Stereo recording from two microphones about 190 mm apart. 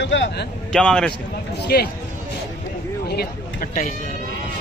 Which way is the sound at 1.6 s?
55° left (ahead or behind).